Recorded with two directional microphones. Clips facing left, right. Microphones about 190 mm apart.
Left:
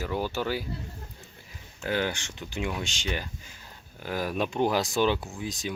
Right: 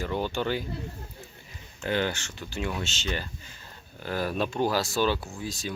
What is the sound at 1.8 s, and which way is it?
Speech, 10° left (ahead or behind).